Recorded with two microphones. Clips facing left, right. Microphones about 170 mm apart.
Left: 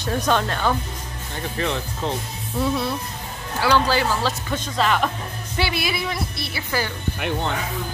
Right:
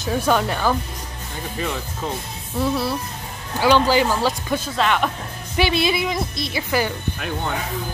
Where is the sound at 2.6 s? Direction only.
5° right (ahead or behind).